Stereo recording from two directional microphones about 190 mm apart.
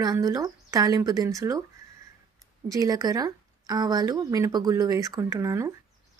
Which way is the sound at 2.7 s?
20° right (ahead or behind).